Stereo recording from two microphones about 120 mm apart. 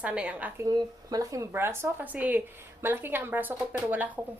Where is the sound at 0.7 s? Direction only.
30° right (ahead or behind); by 4.1 s 15° right (ahead or behind).